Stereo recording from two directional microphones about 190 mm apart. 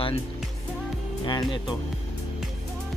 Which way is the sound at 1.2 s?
20° left (ahead or behind).